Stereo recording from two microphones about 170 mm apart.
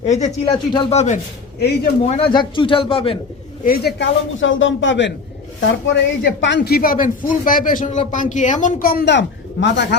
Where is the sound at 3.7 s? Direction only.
80° left.